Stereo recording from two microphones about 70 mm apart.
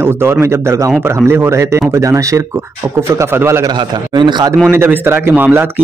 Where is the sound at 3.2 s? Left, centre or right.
Right.